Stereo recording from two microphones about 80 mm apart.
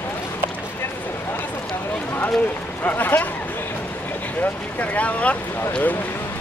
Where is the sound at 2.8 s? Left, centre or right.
Left.